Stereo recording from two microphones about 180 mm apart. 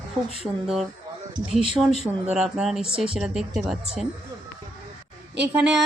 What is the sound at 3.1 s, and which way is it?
Speech, centre (ahead or behind).